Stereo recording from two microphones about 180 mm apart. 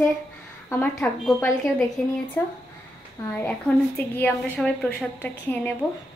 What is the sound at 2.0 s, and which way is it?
A woman's voice, 10° left (ahead or behind).